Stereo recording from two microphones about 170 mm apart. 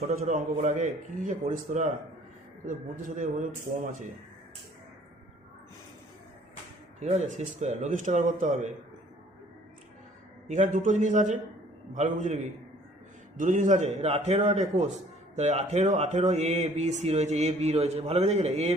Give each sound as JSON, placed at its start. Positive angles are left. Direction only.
{"t": 0.0, "sound": "speech", "side_deg": -45}
{"t": 7.0, "sound": "speech", "side_deg": -40}
{"t": 10.5, "sound": "speech", "side_deg": -45}